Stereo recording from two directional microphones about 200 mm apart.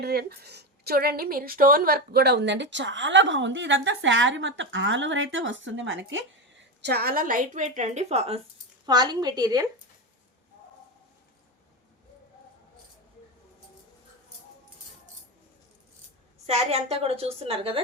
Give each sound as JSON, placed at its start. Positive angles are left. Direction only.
{"t": 0.0, "sound": "a woman's voice", "side_deg": -50}
{"t": 6.8, "sound": "a woman's voice", "side_deg": -50}
{"t": 8.9, "sound": "a woman's voice", "side_deg": -20}
{"t": 16.5, "sound": "a woman's voice", "side_deg": -30}